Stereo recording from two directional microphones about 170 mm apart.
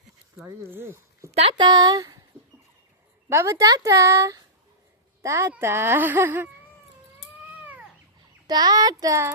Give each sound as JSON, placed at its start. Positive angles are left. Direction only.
{"t": 0.4, "sound": "speech", "side_deg": -15}
{"t": 1.3, "sound": "speech", "side_deg": -35}
{"t": 3.2, "sound": "speech", "side_deg": -15}
{"t": 8.4, "sound": "speech", "side_deg": -25}